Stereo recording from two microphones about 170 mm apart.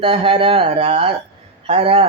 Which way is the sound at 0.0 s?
30° right (ahead or behind).